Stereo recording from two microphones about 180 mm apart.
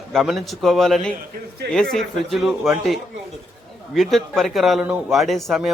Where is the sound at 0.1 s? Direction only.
Centre (ahead or behind).